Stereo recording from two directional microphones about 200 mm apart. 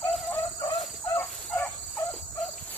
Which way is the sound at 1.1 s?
10° left (ahead or behind).